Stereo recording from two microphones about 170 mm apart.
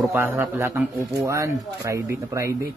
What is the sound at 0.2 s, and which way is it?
Speech, 15° right (ahead or behind).